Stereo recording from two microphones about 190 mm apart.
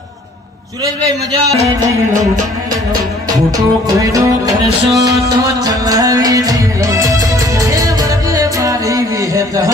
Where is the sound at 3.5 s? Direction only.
20° right (ahead or behind).